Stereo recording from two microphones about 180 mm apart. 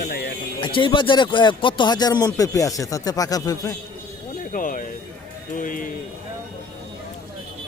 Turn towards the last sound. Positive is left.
turn(degrees=50)  # may be behind; listen again after turning